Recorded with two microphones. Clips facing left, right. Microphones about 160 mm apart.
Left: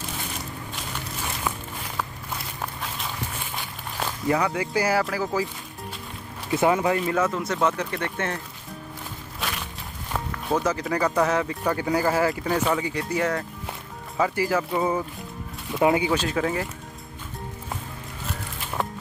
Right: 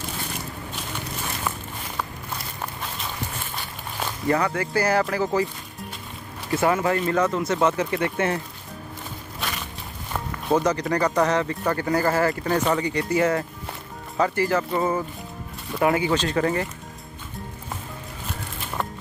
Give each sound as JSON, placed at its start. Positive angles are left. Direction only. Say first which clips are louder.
{"t": 3.5, "sound": "speech", "louder": "left 1 dB", "side_deg": 5}
{"t": 6.5, "sound": "speech", "louder": "even", "side_deg": 15}
{"t": 7.0, "sound": "speech", "louder": "right 2 dB", "side_deg": 5}
{"t": 9.4, "sound": "a sound", "louder": "even", "side_deg": 0}
{"t": 10.1, "sound": "speech", "louder": "right 3 dB", "side_deg": 0}
{"t": 15.7, "sound": "speech", "louder": "left 1 dB", "side_deg": 15}
{"t": 16.1, "sound": "speech", "louder": "right 2 dB", "side_deg": 5}